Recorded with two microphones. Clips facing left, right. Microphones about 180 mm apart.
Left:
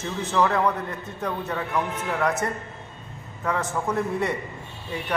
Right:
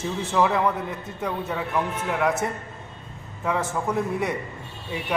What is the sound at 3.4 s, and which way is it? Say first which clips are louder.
Speech: right 1 dB; 5° right (ahead or behind).